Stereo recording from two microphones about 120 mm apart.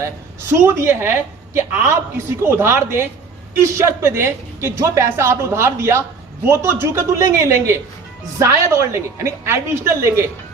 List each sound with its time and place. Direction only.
0.5 s a woman's voice: 20° right (ahead or behind)